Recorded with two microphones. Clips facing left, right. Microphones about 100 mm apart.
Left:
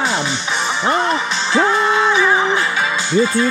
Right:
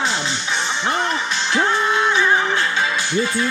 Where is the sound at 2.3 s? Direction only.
20° left (ahead or behind).